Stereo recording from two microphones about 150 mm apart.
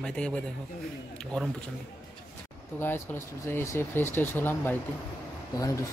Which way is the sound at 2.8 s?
15° left (ahead or behind).